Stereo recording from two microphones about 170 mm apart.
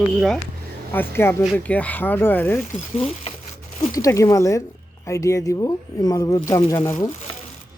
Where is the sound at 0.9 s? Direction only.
15° left (ahead or behind).